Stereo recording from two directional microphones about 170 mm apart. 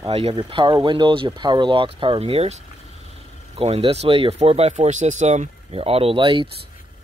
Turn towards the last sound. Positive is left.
turn(degrees=-30)  # may be behind; listen again after turning